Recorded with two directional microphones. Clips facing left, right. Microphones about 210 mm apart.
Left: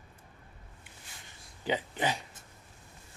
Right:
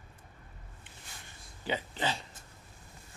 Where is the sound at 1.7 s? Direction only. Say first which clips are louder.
Left 3 dB; 15° left (ahead or behind).